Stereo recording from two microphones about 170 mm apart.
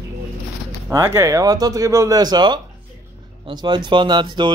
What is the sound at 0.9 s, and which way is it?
A man's voice, 15° right (ahead or behind).